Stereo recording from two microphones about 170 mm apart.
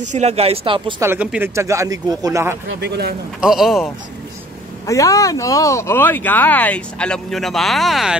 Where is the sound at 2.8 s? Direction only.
75° right (ahead or behind).